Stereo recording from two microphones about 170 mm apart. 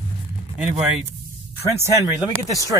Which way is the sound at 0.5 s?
5° right (ahead or behind).